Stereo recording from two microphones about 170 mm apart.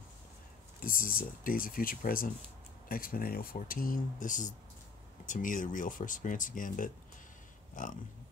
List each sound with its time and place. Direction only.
0.7 s speech: 55° left (ahead or behind)